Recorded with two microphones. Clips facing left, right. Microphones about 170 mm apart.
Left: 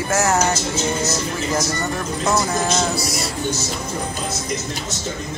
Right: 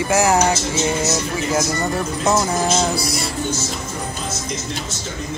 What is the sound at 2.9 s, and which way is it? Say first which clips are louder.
Music: right 1 dB; 30° right (ahead or behind).